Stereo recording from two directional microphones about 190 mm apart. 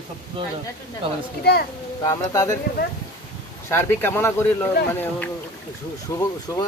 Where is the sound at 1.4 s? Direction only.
55° left (ahead or behind).